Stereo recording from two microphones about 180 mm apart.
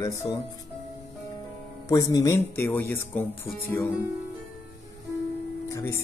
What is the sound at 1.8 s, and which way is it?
Speech, 20° left (ahead or behind).